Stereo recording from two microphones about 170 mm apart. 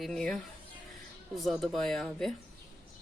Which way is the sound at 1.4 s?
Centre (ahead or behind).